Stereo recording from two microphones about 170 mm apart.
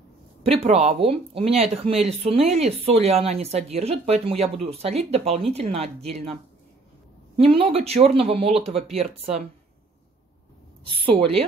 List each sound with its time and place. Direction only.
0.5 s speech: 35° right (ahead or behind)
7.3 s speech: 35° right (ahead or behind)